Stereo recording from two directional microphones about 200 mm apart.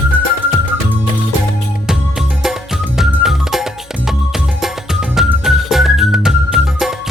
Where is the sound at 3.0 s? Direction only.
Centre (ahead or behind).